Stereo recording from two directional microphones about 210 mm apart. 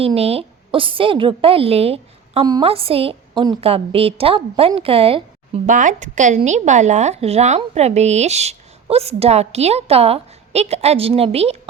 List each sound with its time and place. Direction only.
0.0 s a woman's voice: 30° right (ahead or behind)
5.6 s a woman's voice: 40° right (ahead or behind)